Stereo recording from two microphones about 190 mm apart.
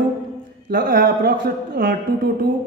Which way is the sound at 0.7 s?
50° right (ahead or behind).